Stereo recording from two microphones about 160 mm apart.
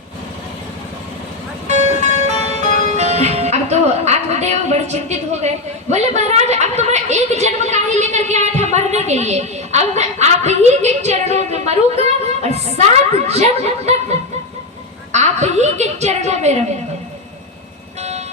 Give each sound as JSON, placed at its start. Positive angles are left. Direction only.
{"t": 1.6, "sound": "music", "side_deg": -45}
{"t": 5.9, "sound": "a woman's voice", "side_deg": -45}
{"t": 15.1, "sound": "a woman's voice", "side_deg": -45}